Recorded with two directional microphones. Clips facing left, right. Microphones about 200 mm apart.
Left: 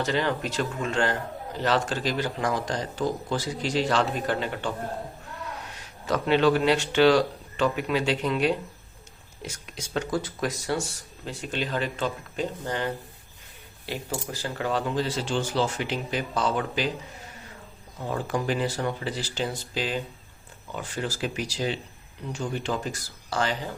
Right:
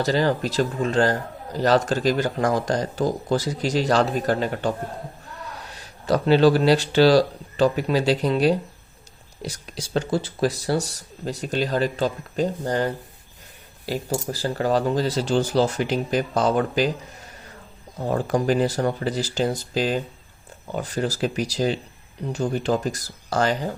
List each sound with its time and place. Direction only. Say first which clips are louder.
0.0 s a man's voice: right 5 dB; 35° right (ahead or behind)
5.7 s a man's voice: right 6 dB; 35° right (ahead or behind)
17.9 s a man's voice: right 6 dB; 40° right (ahead or behind)